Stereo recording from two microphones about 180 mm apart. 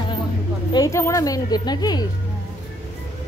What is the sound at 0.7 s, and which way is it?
A woman's voice, 20° left (ahead or behind).